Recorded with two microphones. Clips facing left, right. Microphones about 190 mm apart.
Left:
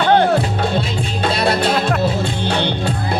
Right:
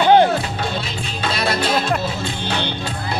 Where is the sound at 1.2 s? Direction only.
55° left (ahead or behind).